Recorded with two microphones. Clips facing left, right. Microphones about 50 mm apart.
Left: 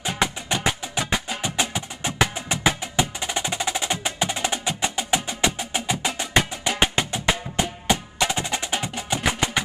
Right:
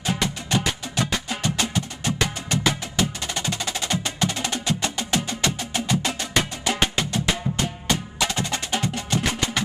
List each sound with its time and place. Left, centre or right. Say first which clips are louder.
0.2 s music: left 4 dB; centre
3.0 s percussion: left 2 dB; centre
6.8 s music: left 3 dB; centre
7.6 s wood block: left 5 dB; centre